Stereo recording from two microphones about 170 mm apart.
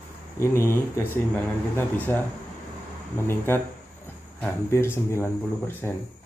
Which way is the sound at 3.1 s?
15° left (ahead or behind).